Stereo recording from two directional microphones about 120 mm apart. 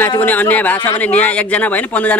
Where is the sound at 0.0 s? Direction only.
15° left (ahead or behind).